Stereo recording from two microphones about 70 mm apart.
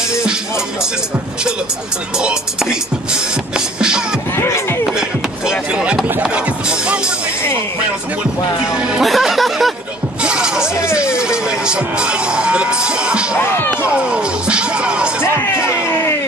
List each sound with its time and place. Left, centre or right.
0.1 s music: centre
2.1 s speech: centre
3.5 s music: centre
4.4 s a sound: left
5.5 s a sound: centre
6.3 s music: centre
8.7 s speech: centre
9.0 s speech: centre
10.2 s music: centre
11.0 s speech: centre
13.4 s speech: left
13.8 s music: centre